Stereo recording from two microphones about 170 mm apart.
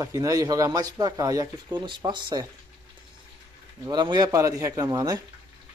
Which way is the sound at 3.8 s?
25° right (ahead or behind).